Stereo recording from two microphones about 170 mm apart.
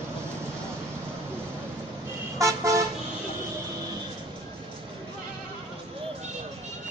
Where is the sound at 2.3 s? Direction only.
20° right (ahead or behind).